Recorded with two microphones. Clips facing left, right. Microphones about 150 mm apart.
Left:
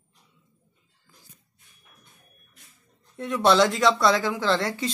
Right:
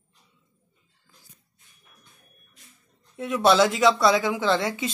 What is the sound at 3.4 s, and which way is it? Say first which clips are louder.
Speech: right 1 dB; 5° right (ahead or behind).